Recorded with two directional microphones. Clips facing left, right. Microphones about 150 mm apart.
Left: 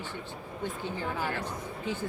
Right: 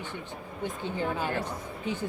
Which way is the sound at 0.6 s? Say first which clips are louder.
Right 3 dB; 15° right (ahead or behind).